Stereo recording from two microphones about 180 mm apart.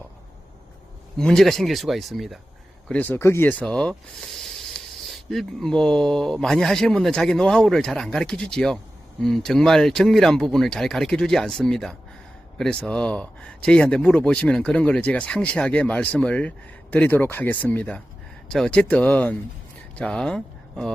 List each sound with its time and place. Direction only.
1.2 s speech: 5° left (ahead or behind)
2.9 s speech: 10° left (ahead or behind)